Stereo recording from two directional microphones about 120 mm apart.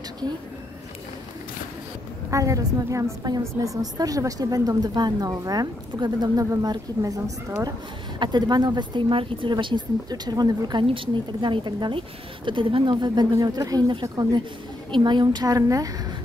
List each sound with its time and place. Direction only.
2.3 s a woman's voice: 25° right (ahead or behind)
8.2 s a woman's voice: 40° right (ahead or behind)